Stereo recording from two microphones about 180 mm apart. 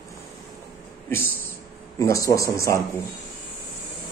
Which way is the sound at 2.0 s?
15° left (ahead or behind).